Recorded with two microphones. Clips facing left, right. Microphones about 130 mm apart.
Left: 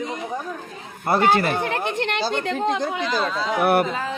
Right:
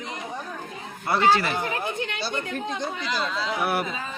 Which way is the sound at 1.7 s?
70° left (ahead or behind).